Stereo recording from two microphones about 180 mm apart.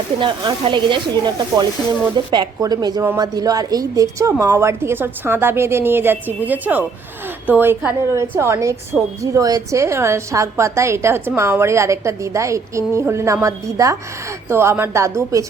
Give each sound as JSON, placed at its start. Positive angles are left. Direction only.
{"t": 0.2, "sound": "a woman's voice", "side_deg": -25}